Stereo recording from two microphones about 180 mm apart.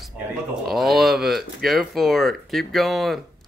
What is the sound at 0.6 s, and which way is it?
Speech, centre (ahead or behind).